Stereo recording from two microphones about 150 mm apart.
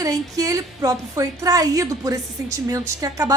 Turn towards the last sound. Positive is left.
turn(degrees=-25)  # may be behind; listen again after turning